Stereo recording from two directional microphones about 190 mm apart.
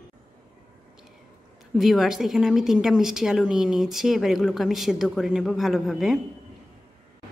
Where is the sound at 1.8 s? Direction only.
Centre (ahead or behind).